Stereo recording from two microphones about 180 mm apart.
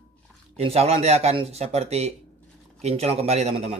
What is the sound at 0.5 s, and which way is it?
Speech, 35° right (ahead or behind).